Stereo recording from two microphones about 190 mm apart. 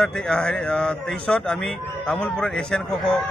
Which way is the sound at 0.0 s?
5° left (ahead or behind).